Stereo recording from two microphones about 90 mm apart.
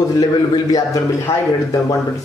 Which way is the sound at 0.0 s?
40° left (ahead or behind).